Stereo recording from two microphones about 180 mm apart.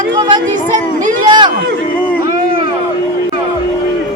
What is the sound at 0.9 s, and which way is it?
Speech, 45° right (ahead or behind).